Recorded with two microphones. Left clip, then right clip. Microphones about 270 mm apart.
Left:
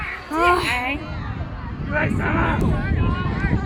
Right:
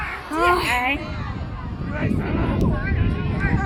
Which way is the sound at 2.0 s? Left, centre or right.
Centre.